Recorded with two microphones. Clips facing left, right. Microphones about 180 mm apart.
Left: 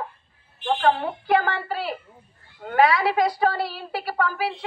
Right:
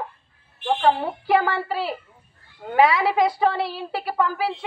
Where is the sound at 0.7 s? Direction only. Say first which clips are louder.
Right 1 dB; 10° right (ahead or behind).